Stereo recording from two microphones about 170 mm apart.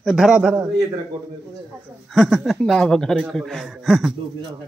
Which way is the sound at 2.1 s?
Centre (ahead or behind).